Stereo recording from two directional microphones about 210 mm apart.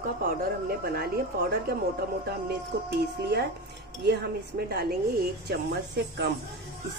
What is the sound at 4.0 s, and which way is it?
A woman's voice, 55° right (ahead or behind).